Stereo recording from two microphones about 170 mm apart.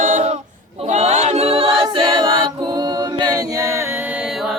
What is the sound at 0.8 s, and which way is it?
A capella, 40° right (ahead or behind).